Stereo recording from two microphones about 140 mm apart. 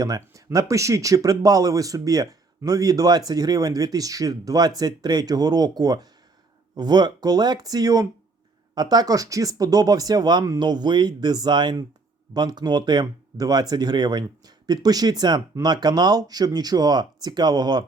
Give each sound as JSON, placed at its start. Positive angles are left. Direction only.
{"t": 0.0, "sound": "speech", "side_deg": -25}